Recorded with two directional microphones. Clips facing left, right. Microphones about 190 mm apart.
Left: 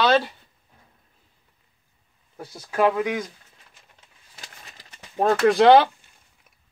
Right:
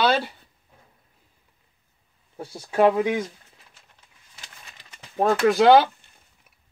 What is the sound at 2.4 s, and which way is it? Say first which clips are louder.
Speech: right 2 dB; 30° right (ahead or behind).